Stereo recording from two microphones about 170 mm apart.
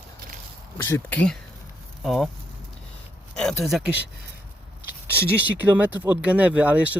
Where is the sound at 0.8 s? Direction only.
15° left (ahead or behind); by 2.3 s centre (ahead or behind).